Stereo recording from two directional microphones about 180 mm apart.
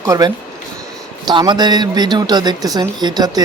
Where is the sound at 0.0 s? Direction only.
20° right (ahead or behind).